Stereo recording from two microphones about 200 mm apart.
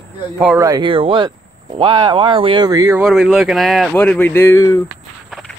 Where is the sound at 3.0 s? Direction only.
Centre (ahead or behind).